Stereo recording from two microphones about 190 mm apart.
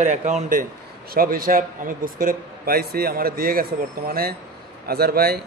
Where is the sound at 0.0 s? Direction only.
40° right (ahead or behind).